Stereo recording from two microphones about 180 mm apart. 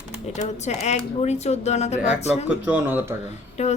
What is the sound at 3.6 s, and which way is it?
Speech, 40° left (ahead or behind).